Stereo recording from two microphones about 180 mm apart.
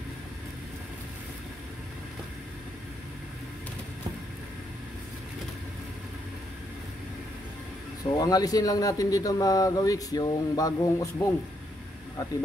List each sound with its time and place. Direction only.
8.0 s a man's voice: 20° left (ahead or behind)